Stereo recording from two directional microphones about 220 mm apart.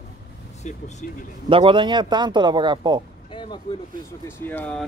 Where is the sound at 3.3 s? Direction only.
20° left (ahead or behind).